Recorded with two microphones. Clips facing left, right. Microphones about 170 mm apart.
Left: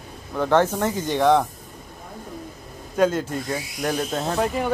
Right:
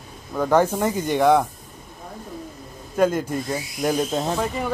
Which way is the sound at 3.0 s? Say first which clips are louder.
Right 1 dB; 10° right (ahead or behind).